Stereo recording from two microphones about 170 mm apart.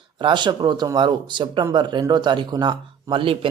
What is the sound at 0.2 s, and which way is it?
Speech, 25° right (ahead or behind).